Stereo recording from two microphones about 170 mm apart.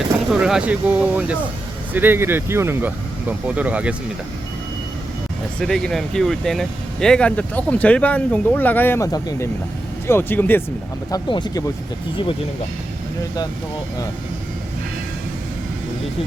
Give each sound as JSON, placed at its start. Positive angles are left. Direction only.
{"t": 0.3, "sound": "speech", "side_deg": -5}
{"t": 5.5, "sound": "speech", "side_deg": 5}
{"t": 11.1, "sound": "speech", "side_deg": 25}